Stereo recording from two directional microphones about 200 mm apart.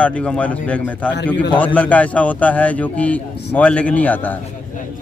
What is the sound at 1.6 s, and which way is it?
A man's voice, 10° left (ahead or behind).